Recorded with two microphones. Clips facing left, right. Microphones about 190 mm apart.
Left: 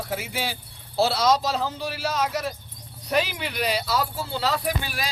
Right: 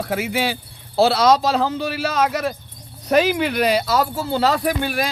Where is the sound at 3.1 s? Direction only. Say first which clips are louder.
Right 9 dB; 50° right (ahead or behind).